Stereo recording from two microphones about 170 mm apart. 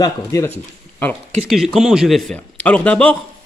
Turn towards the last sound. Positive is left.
turn(degrees=5)  # may be behind; listen again after turning